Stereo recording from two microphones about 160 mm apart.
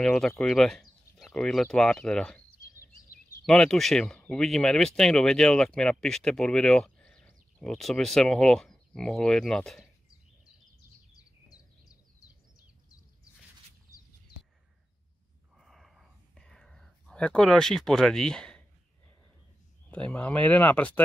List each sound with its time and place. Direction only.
0.0 s speech: centre (ahead or behind)
3.4 s speech: 5° left (ahead or behind)
11.4 s a sound: 20° left (ahead or behind)
15.5 s whispering: centre (ahead or behind)
19.9 s speech: 5° left (ahead or behind)